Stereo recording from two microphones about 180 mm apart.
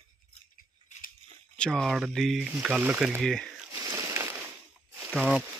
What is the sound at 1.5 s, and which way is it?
Speech, 5° left (ahead or behind).